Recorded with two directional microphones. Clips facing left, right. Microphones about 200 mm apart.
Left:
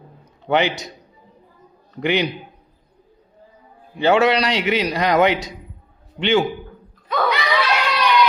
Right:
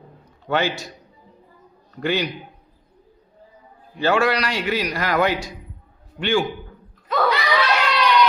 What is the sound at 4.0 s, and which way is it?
A man's voice, 20° left (ahead or behind).